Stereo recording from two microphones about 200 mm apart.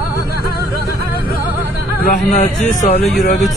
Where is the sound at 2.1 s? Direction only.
40° left (ahead or behind).